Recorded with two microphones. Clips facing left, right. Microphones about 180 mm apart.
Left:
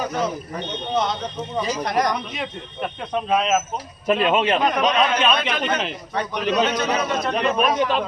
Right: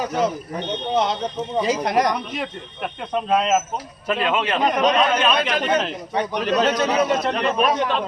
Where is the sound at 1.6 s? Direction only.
25° right (ahead or behind).